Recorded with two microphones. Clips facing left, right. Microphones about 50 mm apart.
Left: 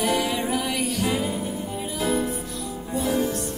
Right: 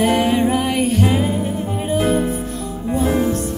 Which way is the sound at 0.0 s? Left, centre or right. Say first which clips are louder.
Right 8 dB; right.